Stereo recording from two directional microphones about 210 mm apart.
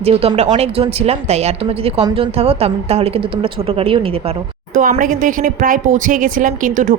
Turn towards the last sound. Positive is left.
turn(degrees=-40)  # may be behind; listen again after turning